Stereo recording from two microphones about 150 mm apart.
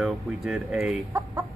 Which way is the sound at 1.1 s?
20° right (ahead or behind).